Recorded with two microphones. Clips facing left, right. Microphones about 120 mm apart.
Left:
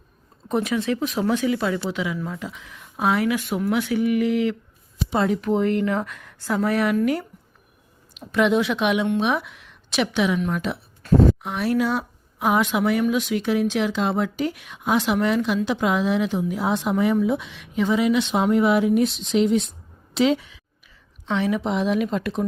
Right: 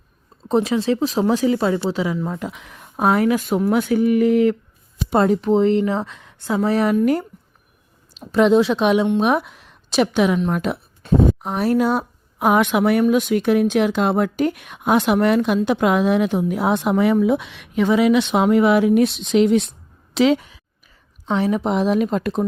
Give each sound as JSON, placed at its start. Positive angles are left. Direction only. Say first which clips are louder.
{"t": 0.4, "sound": "speech", "louder": "right 5 dB", "side_deg": -30}
{"t": 2.4, "sound": "speech", "louder": "right 5 dB", "side_deg": -55}
{"t": 2.7, "sound": "speech", "louder": "right 4 dB", "side_deg": -45}
{"t": 5.4, "sound": "speech", "louder": "right 5 dB", "side_deg": -30}
{"t": 7.0, "sound": "speech", "louder": "right 4 dB", "side_deg": -40}
{"t": 8.3, "sound": "a woman's voice", "louder": "right 5 dB", "side_deg": -35}
{"t": 11.0, "sound": "a sound", "louder": "even", "side_deg": -15}
{"t": 11.4, "sound": "speech", "louder": "right 4 dB", "side_deg": -40}
{"t": 20.1, "sound": "a woman's voice", "louder": "right 4 dB", "side_deg": -90}
{"t": 21.2, "sound": "speech", "louder": "right 3 dB", "side_deg": -40}